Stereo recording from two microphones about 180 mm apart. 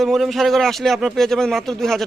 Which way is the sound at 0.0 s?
Centre (ahead or behind).